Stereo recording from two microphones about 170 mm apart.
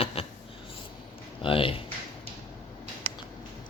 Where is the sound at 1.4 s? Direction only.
30° left (ahead or behind).